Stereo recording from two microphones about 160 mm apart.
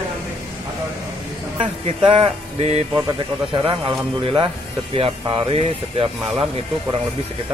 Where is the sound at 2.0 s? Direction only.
35° right (ahead or behind).